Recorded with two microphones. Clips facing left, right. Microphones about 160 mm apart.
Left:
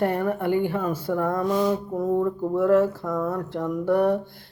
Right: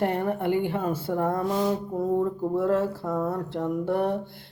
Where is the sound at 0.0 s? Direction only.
25° right (ahead or behind).